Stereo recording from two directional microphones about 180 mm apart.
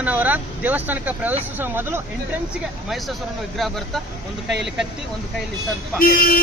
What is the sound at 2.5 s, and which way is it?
Speech, centre (ahead or behind).